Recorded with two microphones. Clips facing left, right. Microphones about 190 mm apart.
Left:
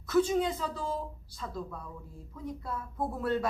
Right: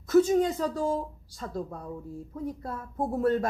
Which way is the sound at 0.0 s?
45° right (ahead or behind).